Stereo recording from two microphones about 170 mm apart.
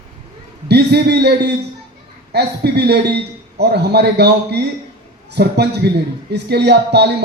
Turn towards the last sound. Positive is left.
turn(degrees=-80)